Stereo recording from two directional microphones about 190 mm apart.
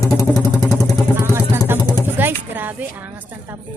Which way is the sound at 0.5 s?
15° left (ahead or behind).